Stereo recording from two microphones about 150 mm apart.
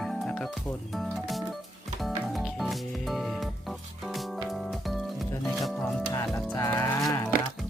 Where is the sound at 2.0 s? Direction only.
Centre (ahead or behind).